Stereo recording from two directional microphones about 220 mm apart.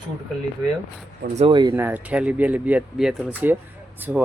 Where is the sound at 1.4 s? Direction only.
20° right (ahead or behind).